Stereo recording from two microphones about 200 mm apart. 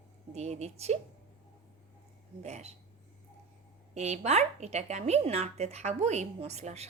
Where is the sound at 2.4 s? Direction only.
35° right (ahead or behind).